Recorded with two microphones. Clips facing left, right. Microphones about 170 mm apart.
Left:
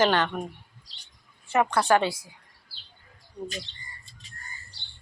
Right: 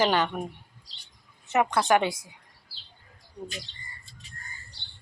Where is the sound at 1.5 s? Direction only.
20° right (ahead or behind).